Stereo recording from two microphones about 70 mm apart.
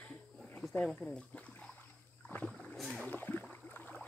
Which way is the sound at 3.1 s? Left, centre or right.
Left.